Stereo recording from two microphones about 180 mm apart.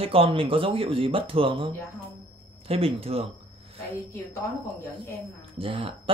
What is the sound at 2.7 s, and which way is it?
Speech, 30° right (ahead or behind).